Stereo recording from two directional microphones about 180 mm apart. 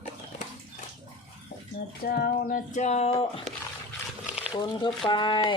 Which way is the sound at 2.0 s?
55° left (ahead or behind).